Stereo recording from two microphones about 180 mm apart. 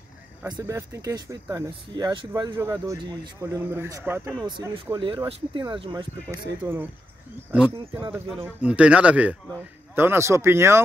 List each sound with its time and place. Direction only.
0.5 s speech: 20° right (ahead or behind)
4.5 s speech: 25° right (ahead or behind)
6.6 s speech: 10° right (ahead or behind)